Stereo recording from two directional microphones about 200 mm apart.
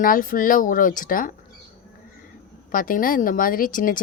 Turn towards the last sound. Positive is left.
turn(degrees=40)  # may be behind; listen again after turning